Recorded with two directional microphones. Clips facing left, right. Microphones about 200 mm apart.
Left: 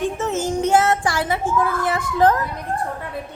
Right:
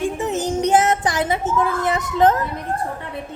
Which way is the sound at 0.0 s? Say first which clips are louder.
Even; 15° right (ahead or behind).